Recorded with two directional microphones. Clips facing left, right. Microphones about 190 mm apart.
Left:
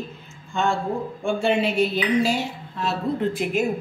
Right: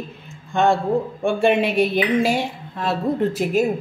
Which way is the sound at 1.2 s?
60° right (ahead or behind).